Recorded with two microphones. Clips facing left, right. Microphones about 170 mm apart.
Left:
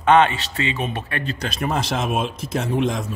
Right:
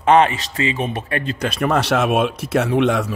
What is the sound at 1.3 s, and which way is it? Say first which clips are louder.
A man's voice: right 6 dB; 60° right (ahead or behind).